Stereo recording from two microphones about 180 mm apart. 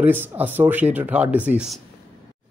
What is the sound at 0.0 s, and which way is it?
A man's voice, 10° right (ahead or behind).